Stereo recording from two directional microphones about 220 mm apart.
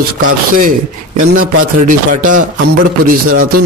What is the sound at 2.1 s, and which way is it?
Speech, 35° right (ahead or behind).